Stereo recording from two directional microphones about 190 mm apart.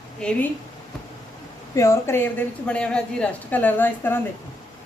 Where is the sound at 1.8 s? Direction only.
15° left (ahead or behind).